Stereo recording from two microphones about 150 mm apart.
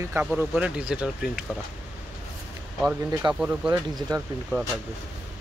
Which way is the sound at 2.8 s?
10° right (ahead or behind).